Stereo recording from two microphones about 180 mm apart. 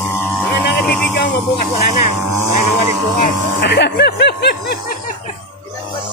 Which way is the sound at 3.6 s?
70° left (ahead or behind).